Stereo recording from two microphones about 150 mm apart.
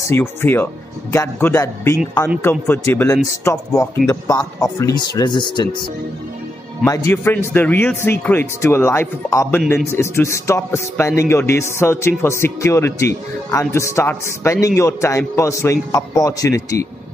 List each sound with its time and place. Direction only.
0.1 s a man's voice: 15° left (ahead or behind); by 5.7 s 30° left (ahead or behind)
6.8 s a man's voice: 15° left (ahead or behind)